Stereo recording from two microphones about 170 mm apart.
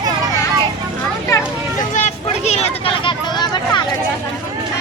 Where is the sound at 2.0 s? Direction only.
40° left (ahead or behind); by 3.8 s 25° left (ahead or behind).